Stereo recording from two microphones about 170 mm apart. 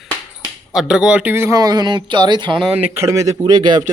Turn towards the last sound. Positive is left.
turn(degrees=-25)  # may be behind; listen again after turning